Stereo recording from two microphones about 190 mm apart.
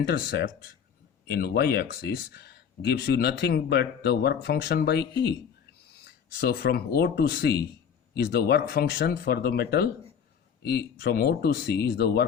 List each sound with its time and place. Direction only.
0.0 s speech: 55° left (ahead or behind)
6.1 s speech: 60° left (ahead or behind)